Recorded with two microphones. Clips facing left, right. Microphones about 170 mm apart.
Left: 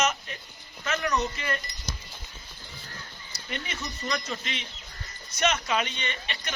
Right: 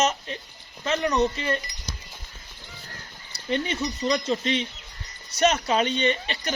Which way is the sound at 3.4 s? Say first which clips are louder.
Right 10 dB; 30° right (ahead or behind).